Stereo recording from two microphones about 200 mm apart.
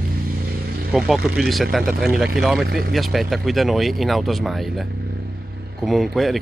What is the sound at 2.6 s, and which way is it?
Speech, 50° right (ahead or behind).